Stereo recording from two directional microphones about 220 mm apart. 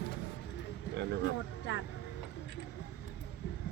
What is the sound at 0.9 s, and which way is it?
Speech, 45° right (ahead or behind).